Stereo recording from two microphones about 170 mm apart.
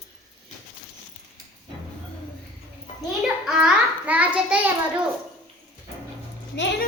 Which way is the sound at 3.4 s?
5° right (ahead or behind).